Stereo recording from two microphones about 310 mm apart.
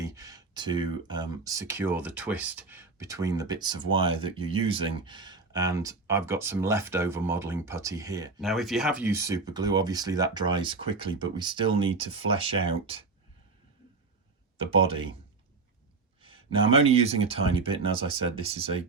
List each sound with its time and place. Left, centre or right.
0.0 s speech: centre
8.4 s speech: centre
14.6 s speech: centre
16.2 s speech: centre